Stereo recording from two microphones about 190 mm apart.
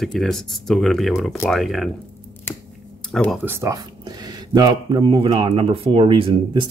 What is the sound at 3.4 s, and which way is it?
Speech, 10° right (ahead or behind).